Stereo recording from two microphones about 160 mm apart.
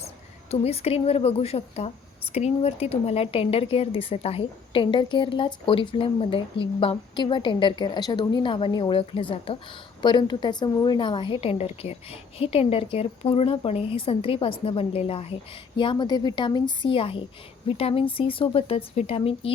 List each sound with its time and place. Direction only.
0.5 s a woman's voice: 40° left (ahead or behind)